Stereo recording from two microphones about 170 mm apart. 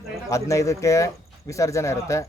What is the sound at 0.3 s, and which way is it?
A man's voice, 20° left (ahead or behind).